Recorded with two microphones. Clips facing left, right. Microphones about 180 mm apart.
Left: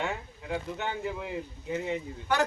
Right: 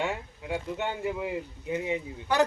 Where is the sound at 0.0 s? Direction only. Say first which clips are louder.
Right 2 dB; 10° right (ahead or behind).